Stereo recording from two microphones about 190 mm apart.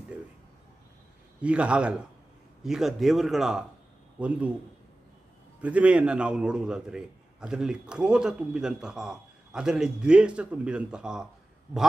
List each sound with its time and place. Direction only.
1.4 s a man's voice: 5° right (ahead or behind)
5.6 s a man's voice: 5° right (ahead or behind)